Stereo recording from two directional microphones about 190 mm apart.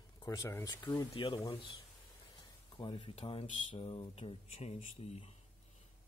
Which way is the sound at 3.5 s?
30° left (ahead or behind).